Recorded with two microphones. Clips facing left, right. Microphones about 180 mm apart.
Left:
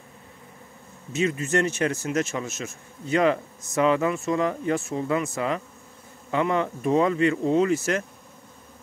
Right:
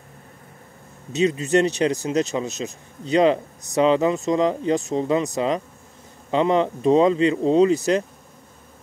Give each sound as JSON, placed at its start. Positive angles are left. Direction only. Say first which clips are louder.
{"t": 1.1, "sound": "speech", "louder": "right 5 dB", "side_deg": -20}